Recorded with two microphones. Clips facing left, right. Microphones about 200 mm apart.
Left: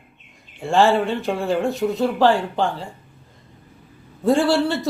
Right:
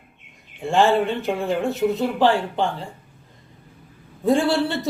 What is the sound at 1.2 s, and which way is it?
A woman's voice, centre (ahead or behind).